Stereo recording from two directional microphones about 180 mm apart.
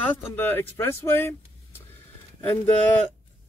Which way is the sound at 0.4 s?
10° left (ahead or behind).